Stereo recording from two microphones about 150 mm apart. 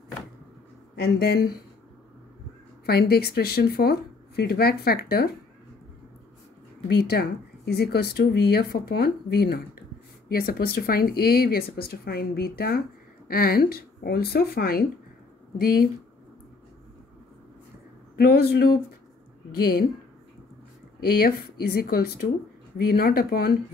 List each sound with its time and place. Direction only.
0.9 s speech: 90° left
2.8 s speech: 90° left
7.0 s speech: 90° left
10.3 s speech: 80° left
18.1 s speech: 90° left
21.1 s speech: 85° left